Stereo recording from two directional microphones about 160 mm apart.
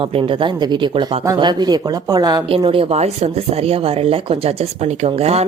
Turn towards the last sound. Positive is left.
turn(degrees=-40)  # may be behind; listen again after turning